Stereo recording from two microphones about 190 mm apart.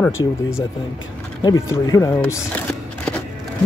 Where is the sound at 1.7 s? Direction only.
15° left (ahead or behind).